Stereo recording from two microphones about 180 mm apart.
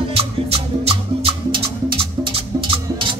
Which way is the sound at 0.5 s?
30° right (ahead or behind).